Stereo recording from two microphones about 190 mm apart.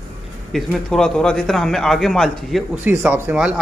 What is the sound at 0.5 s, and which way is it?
A man's voice, 5° left (ahead or behind).